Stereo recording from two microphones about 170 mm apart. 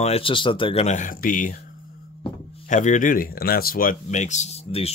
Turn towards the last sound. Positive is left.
turn(degrees=35)  # may be behind; listen again after turning